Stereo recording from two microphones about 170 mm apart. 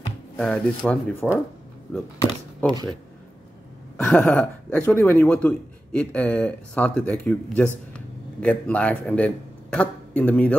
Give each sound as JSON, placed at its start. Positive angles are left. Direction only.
{"t": 0.4, "sound": "speech", "side_deg": 5}
{"t": 2.6, "sound": "speech", "side_deg": -25}
{"t": 3.9, "sound": "speech", "side_deg": 5}